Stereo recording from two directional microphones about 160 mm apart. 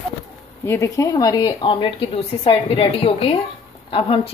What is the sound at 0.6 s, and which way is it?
A woman's voice, 20° left (ahead or behind).